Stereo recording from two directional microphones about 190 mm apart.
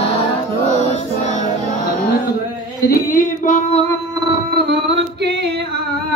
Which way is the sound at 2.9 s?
45° left (ahead or behind).